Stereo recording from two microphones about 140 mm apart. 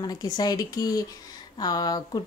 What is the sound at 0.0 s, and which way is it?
Speech, 30° left (ahead or behind).